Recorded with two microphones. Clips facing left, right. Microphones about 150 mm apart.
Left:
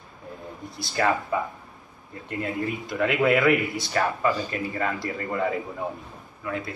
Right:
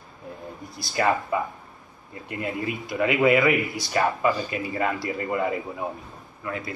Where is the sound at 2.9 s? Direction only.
5° right (ahead or behind).